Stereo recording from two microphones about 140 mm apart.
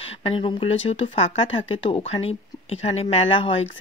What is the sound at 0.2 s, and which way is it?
Speech, 40° left (ahead or behind).